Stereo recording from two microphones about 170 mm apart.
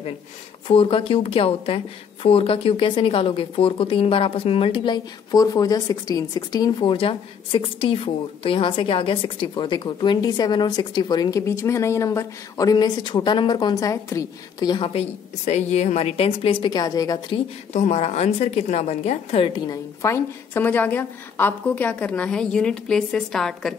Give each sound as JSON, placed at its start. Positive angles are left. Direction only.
{"t": 0.7, "sound": "speech", "side_deg": 30}
{"t": 17.7, "sound": "speech", "side_deg": 40}